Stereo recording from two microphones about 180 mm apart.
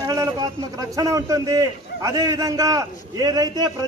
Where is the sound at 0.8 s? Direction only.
20° right (ahead or behind).